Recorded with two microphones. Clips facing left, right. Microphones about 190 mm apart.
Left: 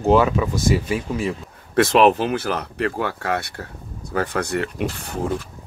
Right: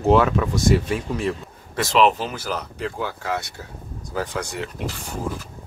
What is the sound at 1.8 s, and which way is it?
Speech, 55° left (ahead or behind).